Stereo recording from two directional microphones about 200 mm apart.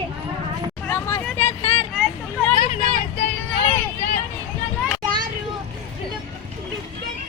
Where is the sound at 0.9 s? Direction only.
10° left (ahead or behind).